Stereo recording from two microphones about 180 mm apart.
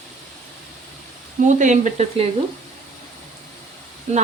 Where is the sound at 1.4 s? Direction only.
45° right (ahead or behind).